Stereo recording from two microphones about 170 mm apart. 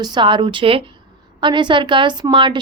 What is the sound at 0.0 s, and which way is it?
A woman's voice, 25° right (ahead or behind).